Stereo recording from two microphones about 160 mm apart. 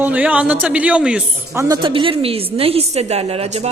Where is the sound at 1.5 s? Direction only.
20° right (ahead or behind).